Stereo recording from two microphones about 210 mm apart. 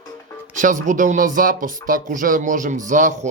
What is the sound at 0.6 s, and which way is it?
Speech, 40° right (ahead or behind).